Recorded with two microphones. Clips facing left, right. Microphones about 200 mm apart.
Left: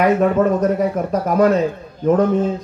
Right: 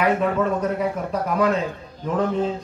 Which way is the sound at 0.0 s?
45° left (ahead or behind).